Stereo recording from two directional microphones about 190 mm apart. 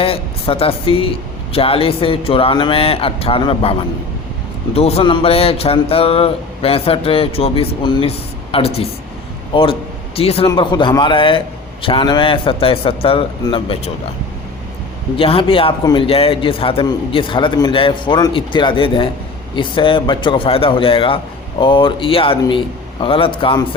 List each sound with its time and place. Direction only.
0.0 s a man's voice: 30° left (ahead or behind)
15.1 s a man's voice: 30° left (ahead or behind)